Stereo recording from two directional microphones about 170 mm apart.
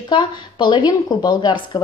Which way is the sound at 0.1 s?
25° left (ahead or behind).